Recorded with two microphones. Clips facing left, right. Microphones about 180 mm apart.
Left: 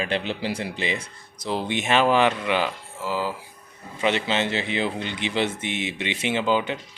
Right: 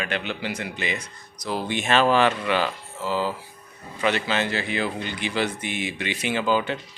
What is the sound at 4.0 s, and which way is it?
Speech, 25° left (ahead or behind).